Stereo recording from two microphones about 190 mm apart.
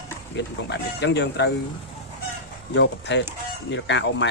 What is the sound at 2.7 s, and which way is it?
Speech, 70° left (ahead or behind).